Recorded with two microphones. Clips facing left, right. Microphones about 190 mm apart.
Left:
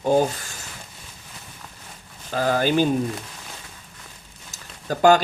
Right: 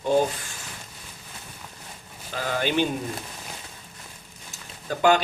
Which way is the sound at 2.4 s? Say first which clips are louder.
Left 5 dB; 45° left (ahead or behind).